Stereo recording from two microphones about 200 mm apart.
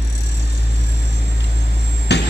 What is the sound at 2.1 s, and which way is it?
Vehicle, 60° left (ahead or behind).